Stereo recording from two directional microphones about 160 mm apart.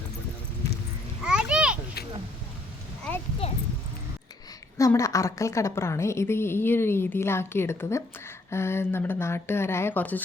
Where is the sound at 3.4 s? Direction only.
35° left (ahead or behind).